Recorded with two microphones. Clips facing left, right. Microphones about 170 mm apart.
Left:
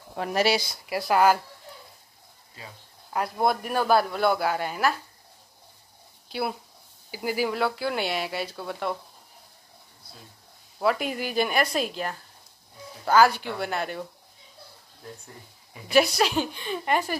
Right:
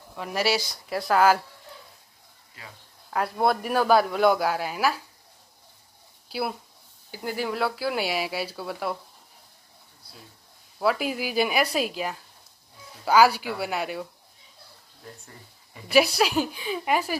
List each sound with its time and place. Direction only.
0.1 s speech: 50° left (ahead or behind)
0.7 s a woman's voice: 5° left (ahead or behind)
3.1 s a woman's voice: centre (ahead or behind)
7.1 s a woman's voice: 5° left (ahead or behind)
10.8 s speech: 5° right (ahead or behind)
15.2 s a woman's voice: 5° right (ahead or behind)